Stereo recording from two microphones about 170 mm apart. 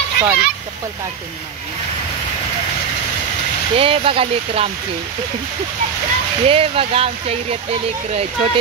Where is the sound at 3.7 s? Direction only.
35° right (ahead or behind).